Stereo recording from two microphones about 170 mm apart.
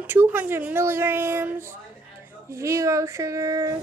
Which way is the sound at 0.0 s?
15° right (ahead or behind).